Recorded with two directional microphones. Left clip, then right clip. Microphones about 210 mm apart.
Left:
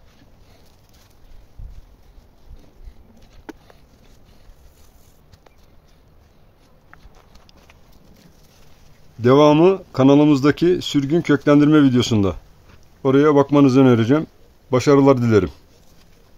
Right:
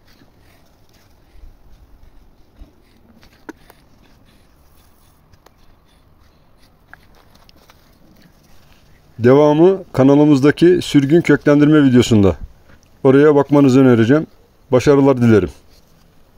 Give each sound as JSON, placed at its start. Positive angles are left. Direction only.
{"t": 9.2, "sound": "speech", "side_deg": -20}
{"t": 9.5, "sound": "speech", "side_deg": -10}
{"t": 9.8, "sound": "speech", "side_deg": -25}